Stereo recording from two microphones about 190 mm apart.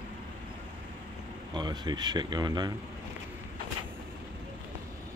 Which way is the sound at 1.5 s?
20° right (ahead or behind).